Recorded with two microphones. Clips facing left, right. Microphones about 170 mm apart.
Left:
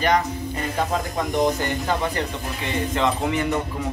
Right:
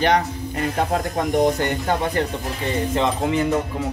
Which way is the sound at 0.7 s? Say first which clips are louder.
Right 2 dB; 45° right (ahead or behind).